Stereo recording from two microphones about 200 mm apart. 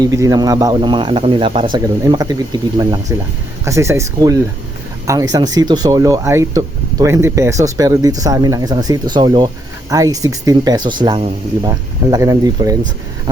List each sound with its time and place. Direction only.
0.0 s speech: 15° right (ahead or behind)